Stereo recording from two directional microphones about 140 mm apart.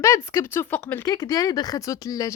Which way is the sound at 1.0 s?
25° left (ahead or behind).